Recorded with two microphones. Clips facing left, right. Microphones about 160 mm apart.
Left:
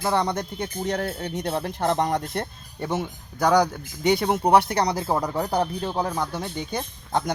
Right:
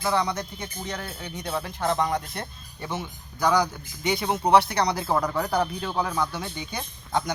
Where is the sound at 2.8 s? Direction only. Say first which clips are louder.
Left 5 dB; 45° left (ahead or behind).